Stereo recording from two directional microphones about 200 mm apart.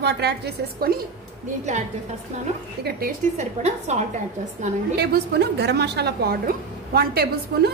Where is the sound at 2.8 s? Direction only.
45° right (ahead or behind).